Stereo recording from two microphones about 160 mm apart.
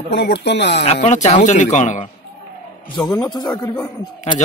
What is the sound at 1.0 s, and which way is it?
Speech, 45° left (ahead or behind).